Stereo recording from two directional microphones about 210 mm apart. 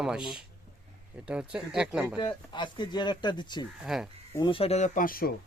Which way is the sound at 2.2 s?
20° left (ahead or behind).